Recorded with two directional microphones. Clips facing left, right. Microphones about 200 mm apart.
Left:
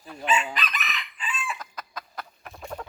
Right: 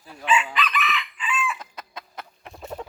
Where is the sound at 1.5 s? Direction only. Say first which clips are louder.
Even; 25° right (ahead or behind).